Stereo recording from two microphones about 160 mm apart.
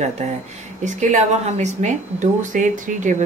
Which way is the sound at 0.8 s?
50° right (ahead or behind).